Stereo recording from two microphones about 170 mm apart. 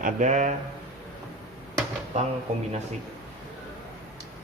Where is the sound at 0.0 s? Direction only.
45° right (ahead or behind).